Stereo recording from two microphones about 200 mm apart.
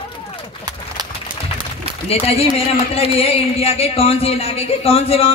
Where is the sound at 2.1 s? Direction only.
30° left (ahead or behind).